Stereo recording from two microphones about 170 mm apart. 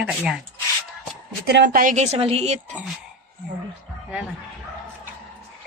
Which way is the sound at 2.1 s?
35° right (ahead or behind).